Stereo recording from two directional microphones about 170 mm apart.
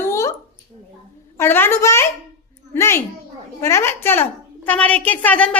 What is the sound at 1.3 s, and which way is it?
A woman's voice, 15° left (ahead or behind).